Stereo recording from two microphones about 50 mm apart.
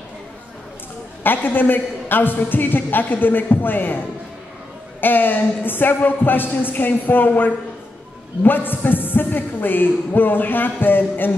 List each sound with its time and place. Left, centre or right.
1.2 s a man's voice: left
5.0 s a man's voice: left